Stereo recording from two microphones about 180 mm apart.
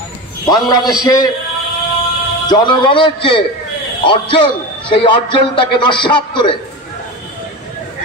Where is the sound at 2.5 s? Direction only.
25° left (ahead or behind).